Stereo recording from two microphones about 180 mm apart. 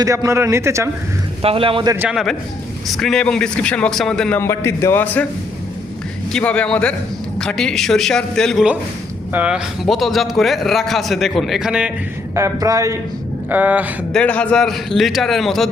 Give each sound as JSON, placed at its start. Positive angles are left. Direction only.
{"t": 0.0, "sound": "a man's voice", "side_deg": -20}
{"t": 1.4, "sound": "a man's voice", "side_deg": -30}
{"t": 2.0, "sound": "a man's voice", "side_deg": -5}
{"t": 6.3, "sound": "a man's voice", "side_deg": 5}
{"t": 12.3, "sound": "a man's voice", "side_deg": -15}
{"t": 14.1, "sound": "a man's voice", "side_deg": 5}